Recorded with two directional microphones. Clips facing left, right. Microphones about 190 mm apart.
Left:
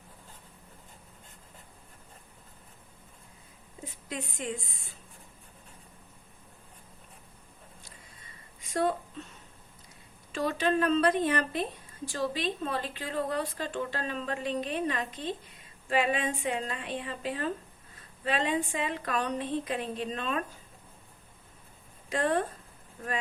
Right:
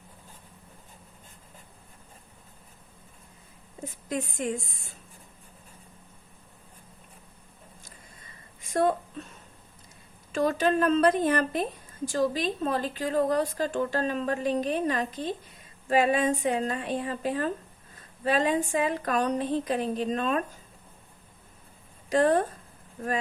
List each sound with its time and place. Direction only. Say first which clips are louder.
4.1 s a woman's voice: right 6 dB; 45° right (ahead or behind)
10.3 s a woman's voice: right 4 dB; 45° right (ahead or behind)
22.1 s a woman's voice: right 6 dB; 40° right (ahead or behind)